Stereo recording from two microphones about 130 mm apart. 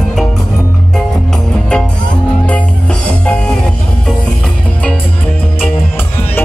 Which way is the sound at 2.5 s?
10° left (ahead or behind).